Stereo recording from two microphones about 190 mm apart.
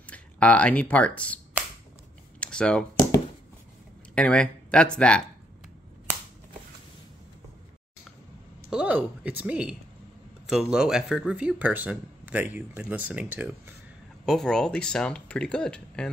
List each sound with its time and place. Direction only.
0.0 s speech: 5° left (ahead or behind)
2.4 s a sound: 5° left (ahead or behind)
4.1 s speech: 5° left (ahead or behind)
8.6 s a woman's voice: 5° right (ahead or behind)
14.2 s speech: centre (ahead or behind)